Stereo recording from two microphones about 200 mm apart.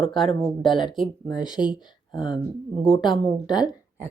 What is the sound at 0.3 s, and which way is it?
Speech, 25° left (ahead or behind).